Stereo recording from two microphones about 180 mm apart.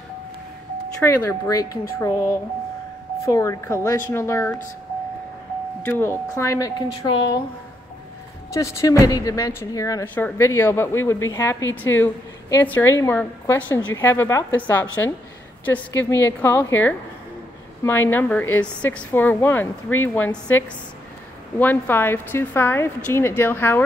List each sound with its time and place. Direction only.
1.0 s a woman's voice: 15° left (ahead or behind)
5.8 s a woman's voice: 10° left (ahead or behind)
8.5 s a woman's voice: 15° left (ahead or behind)
17.8 s a woman's voice: 10° left (ahead or behind)